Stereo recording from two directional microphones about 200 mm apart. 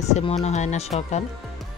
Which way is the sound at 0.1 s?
35° left (ahead or behind).